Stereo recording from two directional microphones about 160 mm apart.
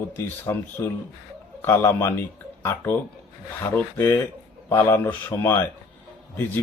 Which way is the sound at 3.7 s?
15° left (ahead or behind).